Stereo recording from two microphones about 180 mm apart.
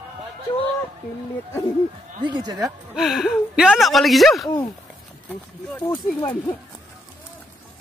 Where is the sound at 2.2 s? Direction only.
25° right (ahead or behind).